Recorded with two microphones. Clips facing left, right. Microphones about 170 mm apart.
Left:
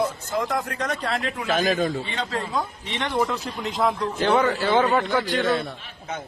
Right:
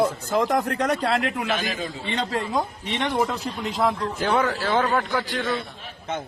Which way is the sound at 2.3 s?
20° right (ahead or behind).